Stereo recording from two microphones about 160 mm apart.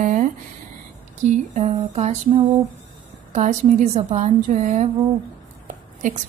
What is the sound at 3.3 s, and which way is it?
A woman's voice, 45° right (ahead or behind).